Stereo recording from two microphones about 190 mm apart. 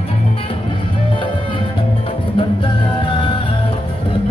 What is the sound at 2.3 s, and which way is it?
Music, 25° left (ahead or behind).